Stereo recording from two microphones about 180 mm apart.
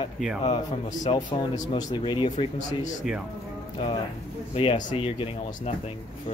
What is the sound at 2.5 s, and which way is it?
Speech, 40° left (ahead or behind).